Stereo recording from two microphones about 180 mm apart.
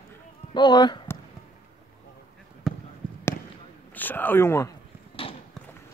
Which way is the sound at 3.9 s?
10° left (ahead or behind).